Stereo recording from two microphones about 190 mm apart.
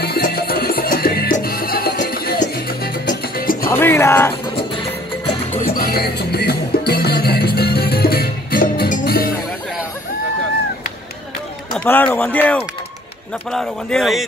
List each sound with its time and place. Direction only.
0.0 s music: 55° left (ahead or behind)
3.7 s speech: 10° left (ahead or behind)
4.6 s music: 25° left (ahead or behind)
5.6 s music: 50° left (ahead or behind)
11.7 s speech: 10° left (ahead or behind)